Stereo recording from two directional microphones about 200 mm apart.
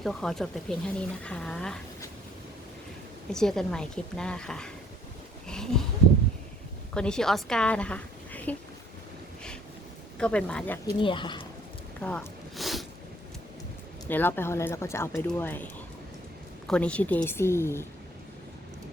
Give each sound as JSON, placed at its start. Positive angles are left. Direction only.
{"t": 0.0, "sound": "speech", "side_deg": 0}
{"t": 3.3, "sound": "speech", "side_deg": 0}
{"t": 5.5, "sound": "a sound", "side_deg": 5}
{"t": 6.9, "sound": "a woman's voice", "side_deg": 5}
{"t": 10.2, "sound": "speech", "side_deg": 5}
{"t": 10.9, "sound": "speech", "side_deg": 25}
{"t": 11.9, "sound": "snort", "side_deg": 5}
{"t": 14.1, "sound": "speech", "side_deg": 10}